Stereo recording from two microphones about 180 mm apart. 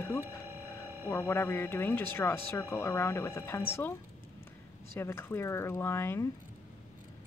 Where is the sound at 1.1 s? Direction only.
10° left (ahead or behind).